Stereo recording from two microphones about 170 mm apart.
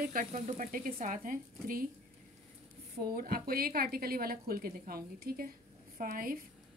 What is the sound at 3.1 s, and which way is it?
A woman's voice, 60° right (ahead or behind).